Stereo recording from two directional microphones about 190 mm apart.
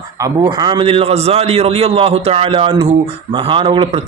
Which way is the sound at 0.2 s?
20° right (ahead or behind).